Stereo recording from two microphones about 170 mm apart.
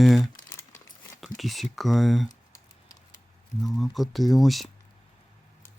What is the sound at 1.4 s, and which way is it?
Speech, centre (ahead or behind).